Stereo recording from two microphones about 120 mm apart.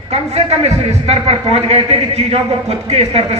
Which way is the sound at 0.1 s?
65° right (ahead or behind).